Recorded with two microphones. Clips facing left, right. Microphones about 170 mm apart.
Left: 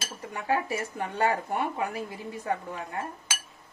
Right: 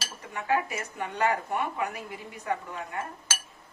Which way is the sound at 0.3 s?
30° left (ahead or behind).